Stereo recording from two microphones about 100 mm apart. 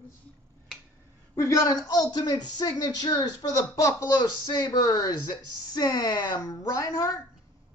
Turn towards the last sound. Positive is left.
turn(degrees=40)  # may be behind; listen again after turning